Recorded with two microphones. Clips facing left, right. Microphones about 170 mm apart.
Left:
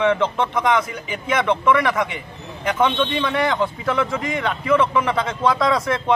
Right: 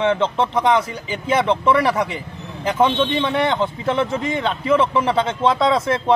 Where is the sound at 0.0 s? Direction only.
30° right (ahead or behind).